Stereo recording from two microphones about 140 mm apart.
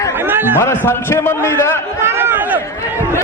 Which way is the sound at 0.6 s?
20° left (ahead or behind).